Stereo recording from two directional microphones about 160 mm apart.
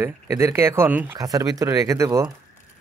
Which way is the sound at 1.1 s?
25° right (ahead or behind).